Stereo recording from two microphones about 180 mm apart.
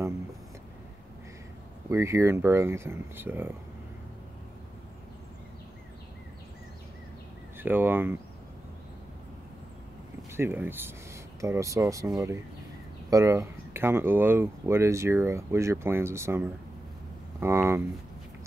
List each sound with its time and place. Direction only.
1.9 s speech: 15° right (ahead or behind)
7.5 s speech: 10° right (ahead or behind)
10.3 s speech: 10° right (ahead or behind)
13.1 s speech: 15° right (ahead or behind)